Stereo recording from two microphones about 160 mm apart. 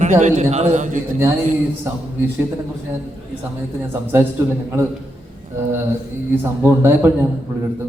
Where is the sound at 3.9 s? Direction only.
15° right (ahead or behind).